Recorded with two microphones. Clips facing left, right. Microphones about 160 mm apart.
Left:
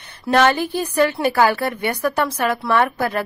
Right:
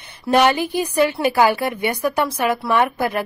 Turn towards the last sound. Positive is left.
turn(degrees=-15)  # may be behind; listen again after turning